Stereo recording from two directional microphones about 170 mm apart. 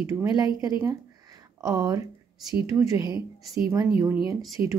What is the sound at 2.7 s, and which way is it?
A woman's voice, 25° right (ahead or behind).